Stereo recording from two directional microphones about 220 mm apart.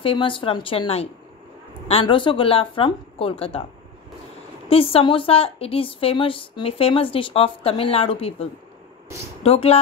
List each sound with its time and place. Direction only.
0.0 s a woman's voice: 25° left (ahead or behind)
4.6 s a woman's voice: 25° left (ahead or behind)